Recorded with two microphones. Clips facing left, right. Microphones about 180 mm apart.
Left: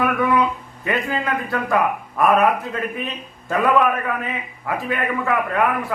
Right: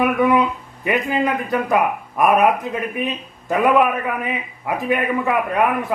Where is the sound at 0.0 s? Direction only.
20° right (ahead or behind).